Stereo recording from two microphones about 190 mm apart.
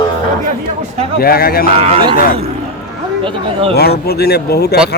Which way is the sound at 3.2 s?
30° right (ahead or behind).